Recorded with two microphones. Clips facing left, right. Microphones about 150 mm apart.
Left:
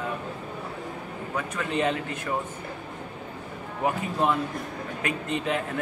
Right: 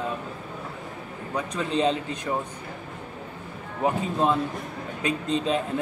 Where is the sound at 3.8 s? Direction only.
25° right (ahead or behind).